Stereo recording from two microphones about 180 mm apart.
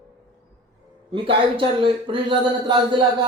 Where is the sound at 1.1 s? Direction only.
30° right (ahead or behind).